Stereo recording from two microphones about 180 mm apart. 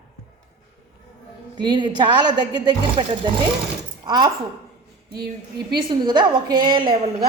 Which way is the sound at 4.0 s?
25° right (ahead or behind).